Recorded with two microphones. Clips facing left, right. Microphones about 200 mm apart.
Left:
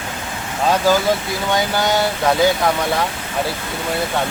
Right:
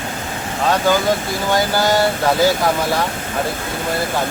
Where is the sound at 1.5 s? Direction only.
Centre (ahead or behind).